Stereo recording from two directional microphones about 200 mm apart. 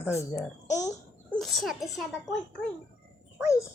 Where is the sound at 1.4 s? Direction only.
Centre (ahead or behind).